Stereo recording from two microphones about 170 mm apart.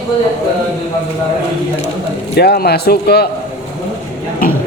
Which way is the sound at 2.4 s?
70° left (ahead or behind).